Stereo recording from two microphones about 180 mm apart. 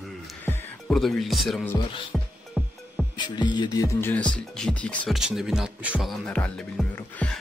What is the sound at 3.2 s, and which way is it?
Music, 25° left (ahead or behind).